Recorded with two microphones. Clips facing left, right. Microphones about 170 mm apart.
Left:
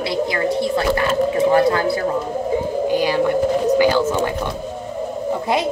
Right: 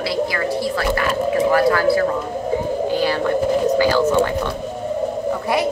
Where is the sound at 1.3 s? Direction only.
25° left (ahead or behind).